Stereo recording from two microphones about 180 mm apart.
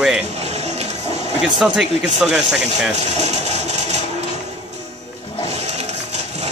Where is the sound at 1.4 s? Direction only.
5° right (ahead or behind).